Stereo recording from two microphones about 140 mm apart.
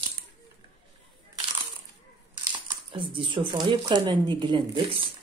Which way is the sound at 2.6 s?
35° right (ahead or behind).